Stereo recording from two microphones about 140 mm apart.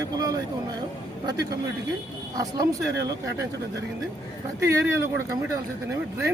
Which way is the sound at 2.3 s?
30° right (ahead or behind).